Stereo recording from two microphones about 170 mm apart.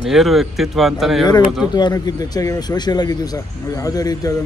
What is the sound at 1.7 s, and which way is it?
Speech, 25° left (ahead or behind).